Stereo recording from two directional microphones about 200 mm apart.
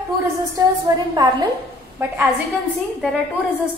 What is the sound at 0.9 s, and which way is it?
A woman's voice, 20° right (ahead or behind).